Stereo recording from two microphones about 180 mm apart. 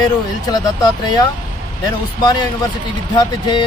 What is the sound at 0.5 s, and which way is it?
Speech, 25° left (ahead or behind).